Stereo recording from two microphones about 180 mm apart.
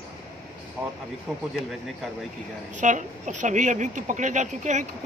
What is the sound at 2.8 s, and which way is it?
Speech, 45° right (ahead or behind).